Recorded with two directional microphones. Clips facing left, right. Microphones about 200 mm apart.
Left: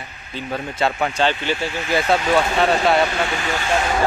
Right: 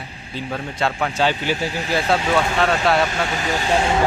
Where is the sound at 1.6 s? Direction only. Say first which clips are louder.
Even; 35° right (ahead or behind).